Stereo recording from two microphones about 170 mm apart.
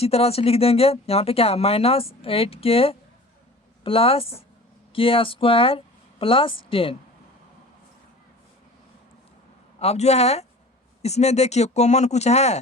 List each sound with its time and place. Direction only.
0.0 s speech: 35° left (ahead or behind)
9.8 s speech: 40° left (ahead or behind)